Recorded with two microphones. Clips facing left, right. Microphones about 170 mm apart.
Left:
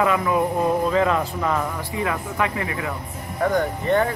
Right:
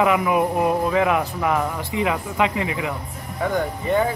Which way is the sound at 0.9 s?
15° right (ahead or behind).